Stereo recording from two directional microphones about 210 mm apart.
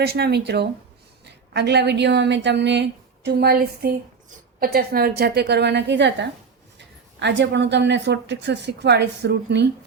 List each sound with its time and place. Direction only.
0.0 s a woman's voice: 50° right (ahead or behind)